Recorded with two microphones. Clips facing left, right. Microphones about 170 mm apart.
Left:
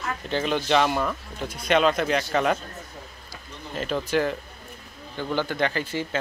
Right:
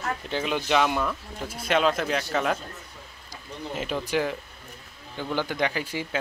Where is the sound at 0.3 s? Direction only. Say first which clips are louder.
Left 3 dB; 5° right (ahead or behind).